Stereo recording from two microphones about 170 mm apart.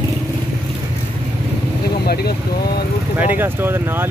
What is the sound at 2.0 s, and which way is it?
Vehicle, 65° left (ahead or behind).